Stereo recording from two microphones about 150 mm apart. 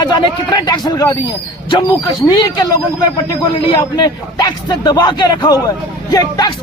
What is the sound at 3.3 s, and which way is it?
A man's voice, 30° left (ahead or behind).